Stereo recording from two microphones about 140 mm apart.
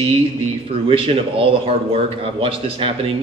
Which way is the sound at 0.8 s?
40° right (ahead or behind).